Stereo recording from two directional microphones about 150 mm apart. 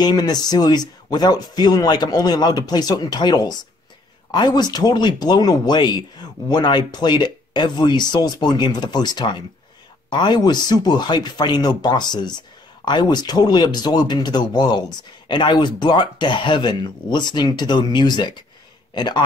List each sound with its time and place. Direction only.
0.0 s speech: 25° left (ahead or behind)